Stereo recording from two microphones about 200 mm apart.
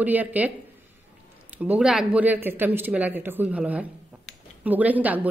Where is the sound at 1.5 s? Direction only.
5° right (ahead or behind).